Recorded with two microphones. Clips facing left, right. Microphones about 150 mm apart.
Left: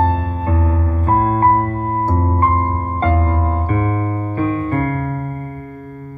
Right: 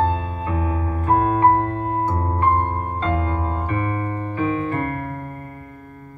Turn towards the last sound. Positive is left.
turn(degrees=50)  # may be behind; listen again after turning